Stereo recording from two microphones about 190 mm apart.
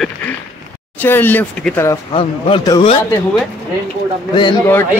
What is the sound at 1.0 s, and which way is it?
Speech, 10° left (ahead or behind).